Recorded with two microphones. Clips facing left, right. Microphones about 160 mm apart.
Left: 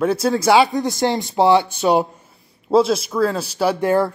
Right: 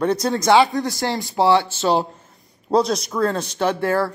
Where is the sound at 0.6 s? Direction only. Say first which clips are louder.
Left 2 dB; 20° left (ahead or behind).